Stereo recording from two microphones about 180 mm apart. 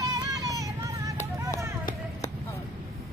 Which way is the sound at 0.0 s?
20° right (ahead or behind).